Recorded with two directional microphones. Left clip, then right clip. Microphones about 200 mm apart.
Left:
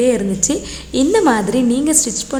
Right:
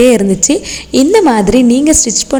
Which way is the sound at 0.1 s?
30° right (ahead or behind).